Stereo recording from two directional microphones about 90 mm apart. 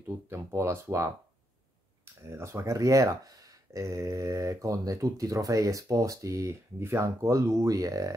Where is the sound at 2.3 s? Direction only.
30° right (ahead or behind).